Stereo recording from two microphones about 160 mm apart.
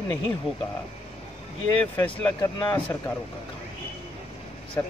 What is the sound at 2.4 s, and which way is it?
Speech, 20° left (ahead or behind).